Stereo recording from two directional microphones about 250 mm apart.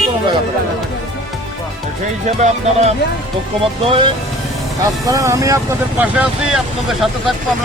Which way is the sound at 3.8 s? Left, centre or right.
Centre.